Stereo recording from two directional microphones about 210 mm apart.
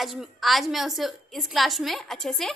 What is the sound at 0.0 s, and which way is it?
A woman's voice, centre (ahead or behind).